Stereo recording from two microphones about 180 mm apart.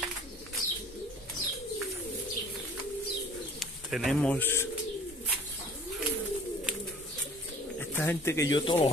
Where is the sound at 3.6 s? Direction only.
Centre (ahead or behind).